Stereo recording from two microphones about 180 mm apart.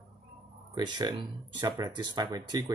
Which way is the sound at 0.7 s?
25° right (ahead or behind).